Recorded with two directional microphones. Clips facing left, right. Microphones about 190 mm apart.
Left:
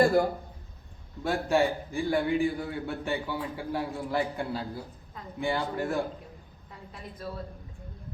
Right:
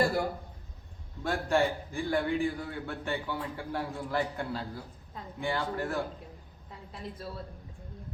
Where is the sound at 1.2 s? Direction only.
5° left (ahead or behind).